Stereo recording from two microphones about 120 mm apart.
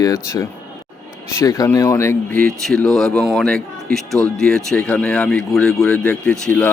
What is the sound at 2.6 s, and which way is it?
Speech, 5° left (ahead or behind).